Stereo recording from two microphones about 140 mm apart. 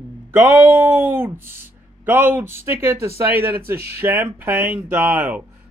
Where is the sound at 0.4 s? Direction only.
15° right (ahead or behind).